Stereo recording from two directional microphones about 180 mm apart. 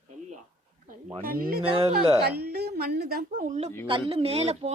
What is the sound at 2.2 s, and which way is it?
A woman's voice, 60° right (ahead or behind).